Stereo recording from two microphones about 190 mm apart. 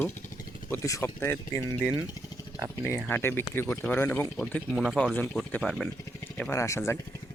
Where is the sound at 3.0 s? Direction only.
10° left (ahead or behind).